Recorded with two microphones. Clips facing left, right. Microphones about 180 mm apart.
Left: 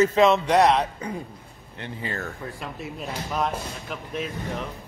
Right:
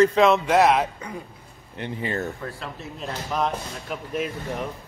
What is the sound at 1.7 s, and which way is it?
Speech, 20° right (ahead or behind).